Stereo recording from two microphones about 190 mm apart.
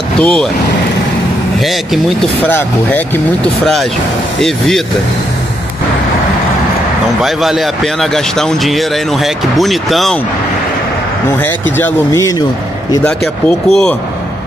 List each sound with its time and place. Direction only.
0.2 s speech: 5° left (ahead or behind)
2.0 s speech: 10° left (ahead or behind)
4.4 s speech: centre (ahead or behind)
7.2 s speech: centre (ahead or behind)
11.4 s speech: 15° left (ahead or behind)
13.0 s speech: centre (ahead or behind)